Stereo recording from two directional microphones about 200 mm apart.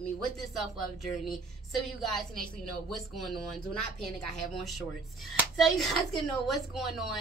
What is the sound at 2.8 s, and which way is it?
Speech, centre (ahead or behind).